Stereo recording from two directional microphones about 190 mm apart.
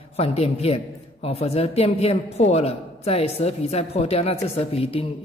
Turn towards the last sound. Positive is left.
turn(degrees=30)  # may be behind; listen again after turning